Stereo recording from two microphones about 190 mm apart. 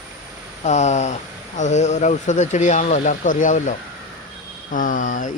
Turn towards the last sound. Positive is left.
turn(degrees=40)  # may be behind; listen again after turning